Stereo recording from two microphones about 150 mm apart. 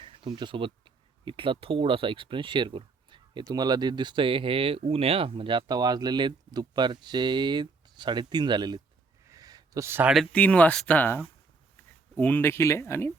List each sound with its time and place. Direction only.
0.0 s speech: 35° right (ahead or behind)
9.2 s a sound: 20° right (ahead or behind)
10.3 s speech: 10° left (ahead or behind)